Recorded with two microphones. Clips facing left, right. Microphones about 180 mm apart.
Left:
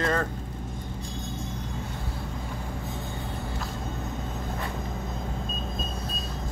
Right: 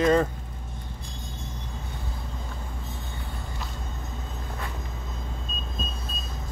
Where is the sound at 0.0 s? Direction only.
15° right (ahead or behind).